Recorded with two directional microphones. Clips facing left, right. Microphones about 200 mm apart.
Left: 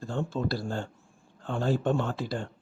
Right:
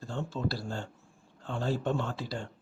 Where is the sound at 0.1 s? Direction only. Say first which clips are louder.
Left 4 dB; 50° left (ahead or behind).